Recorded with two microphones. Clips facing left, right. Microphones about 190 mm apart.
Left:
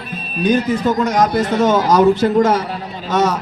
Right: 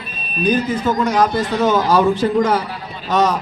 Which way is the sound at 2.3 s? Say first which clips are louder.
Left 2 dB; 45° left (ahead or behind).